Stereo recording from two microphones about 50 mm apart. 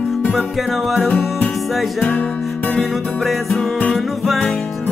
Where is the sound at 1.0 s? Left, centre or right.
Left.